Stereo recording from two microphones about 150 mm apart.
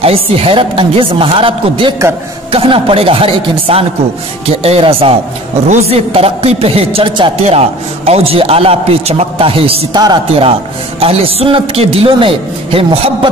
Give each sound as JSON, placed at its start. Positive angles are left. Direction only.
{"t": 0.0, "sound": "a man's voice", "side_deg": -40}
{"t": 9.9, "sound": "a man's voice", "side_deg": -30}